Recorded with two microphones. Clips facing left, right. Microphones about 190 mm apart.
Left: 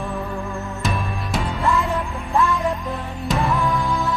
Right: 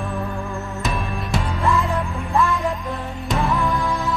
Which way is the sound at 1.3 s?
Centre (ahead or behind).